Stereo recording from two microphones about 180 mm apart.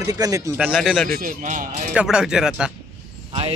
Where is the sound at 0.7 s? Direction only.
Centre (ahead or behind).